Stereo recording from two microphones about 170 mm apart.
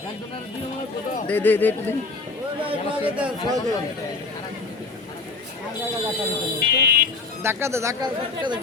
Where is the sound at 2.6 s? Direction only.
10° right (ahead or behind).